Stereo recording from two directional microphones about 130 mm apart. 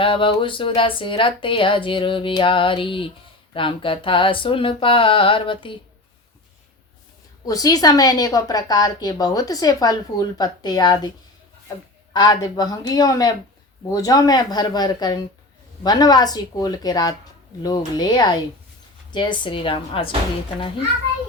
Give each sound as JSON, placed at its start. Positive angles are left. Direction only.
{"t": 0.0, "sound": "speech", "side_deg": 40}
{"t": 7.4, "sound": "a woman's voice", "side_deg": 25}
{"t": 12.1, "sound": "a woman's voice", "side_deg": 35}